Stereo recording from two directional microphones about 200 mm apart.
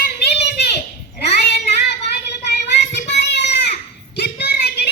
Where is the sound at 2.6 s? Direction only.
60° left (ahead or behind).